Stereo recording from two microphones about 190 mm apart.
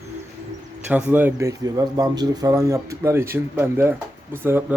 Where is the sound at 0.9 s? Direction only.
10° right (ahead or behind).